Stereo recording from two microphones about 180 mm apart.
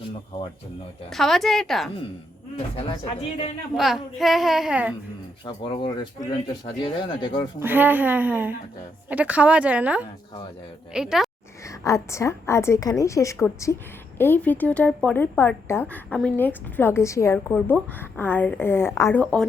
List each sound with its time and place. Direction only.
1.1 s a child's voice: centre (ahead or behind)
2.7 s a woman's voice: 35° left (ahead or behind)
3.8 s a child's voice: centre (ahead or behind)
5.5 s speech: 25° left (ahead or behind)
7.6 s a woman's voice: 10° right (ahead or behind)
11.8 s a woman's voice: 15° left (ahead or behind)